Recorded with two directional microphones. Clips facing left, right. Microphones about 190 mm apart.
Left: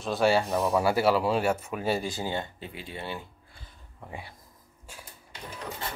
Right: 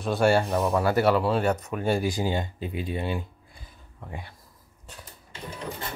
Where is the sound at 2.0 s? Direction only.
15° right (ahead or behind).